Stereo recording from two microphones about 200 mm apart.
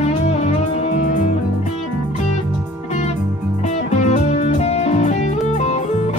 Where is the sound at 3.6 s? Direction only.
35° left (ahead or behind).